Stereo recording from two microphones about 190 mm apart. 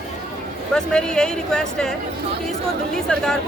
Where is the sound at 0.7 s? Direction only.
5° left (ahead or behind).